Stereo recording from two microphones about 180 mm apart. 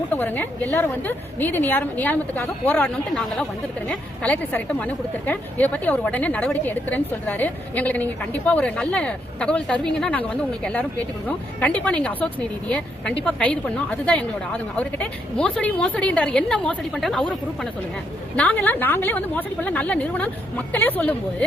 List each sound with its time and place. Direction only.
0.1 s a woman's voice: 10° left (ahead or behind)